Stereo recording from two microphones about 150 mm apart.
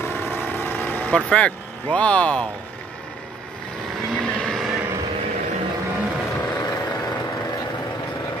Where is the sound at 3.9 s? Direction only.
5° left (ahead or behind).